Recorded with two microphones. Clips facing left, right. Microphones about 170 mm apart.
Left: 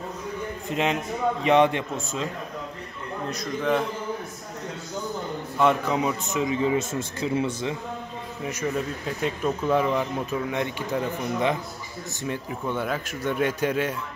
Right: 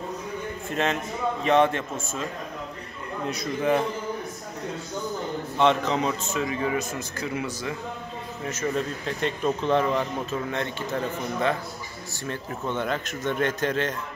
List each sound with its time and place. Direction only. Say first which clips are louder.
0.7 s speech: left 1 dB; 15° left (ahead or behind)
3.3 s a man's voice: right 1 dB; 5° right (ahead or behind)
5.6 s a man's voice: even; 10° left (ahead or behind); by 7.7 s 25° left (ahead or behind)
8.5 s speech: even; 10° left (ahead or behind)